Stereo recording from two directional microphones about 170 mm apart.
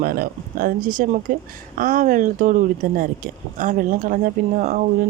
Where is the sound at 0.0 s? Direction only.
55° right (ahead or behind).